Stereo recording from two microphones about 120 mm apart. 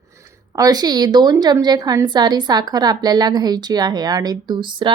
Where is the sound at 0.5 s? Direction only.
30° right (ahead or behind).